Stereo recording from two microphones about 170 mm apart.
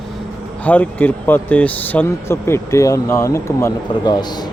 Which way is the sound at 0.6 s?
10° left (ahead or behind).